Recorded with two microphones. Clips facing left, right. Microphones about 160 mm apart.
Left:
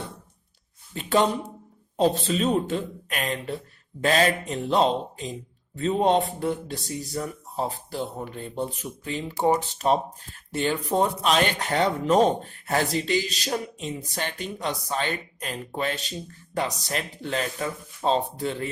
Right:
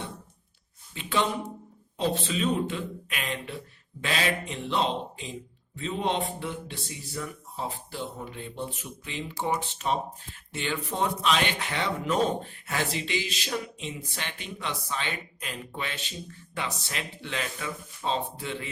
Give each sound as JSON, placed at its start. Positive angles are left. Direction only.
{"t": 0.9, "sound": "speech", "side_deg": 45}